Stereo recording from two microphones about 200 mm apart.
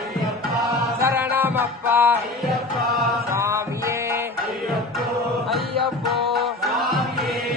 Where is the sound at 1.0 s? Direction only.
10° right (ahead or behind).